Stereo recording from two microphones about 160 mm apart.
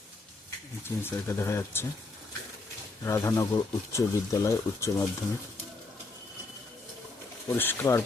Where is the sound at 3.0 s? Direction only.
20° left (ahead or behind).